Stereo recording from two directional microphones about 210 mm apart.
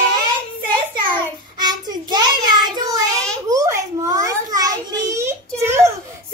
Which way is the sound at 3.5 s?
15° right (ahead or behind).